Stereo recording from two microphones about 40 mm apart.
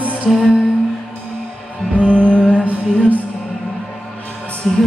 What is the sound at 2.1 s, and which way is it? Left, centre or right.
Music, left.